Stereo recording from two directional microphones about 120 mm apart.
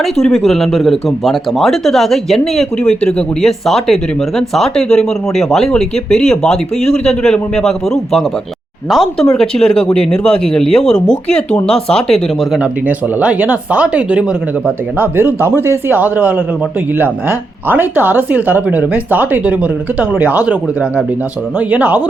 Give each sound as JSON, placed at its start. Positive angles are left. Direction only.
{"t": 0.0, "sound": "speech", "side_deg": 0}
{"t": 8.9, "sound": "speech", "side_deg": 0}
{"t": 13.1, "sound": "speech", "side_deg": -15}